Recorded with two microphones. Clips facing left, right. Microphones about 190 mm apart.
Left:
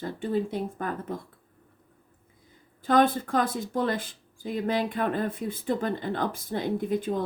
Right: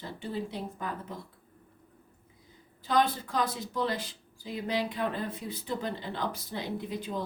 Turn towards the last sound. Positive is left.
turn(degrees=50)  # may be behind; listen again after turning